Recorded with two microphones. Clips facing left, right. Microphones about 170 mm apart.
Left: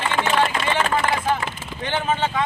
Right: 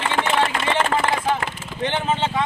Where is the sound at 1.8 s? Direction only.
25° right (ahead or behind).